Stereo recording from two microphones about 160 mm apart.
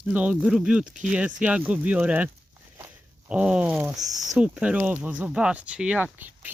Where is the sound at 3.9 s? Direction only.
25° right (ahead or behind).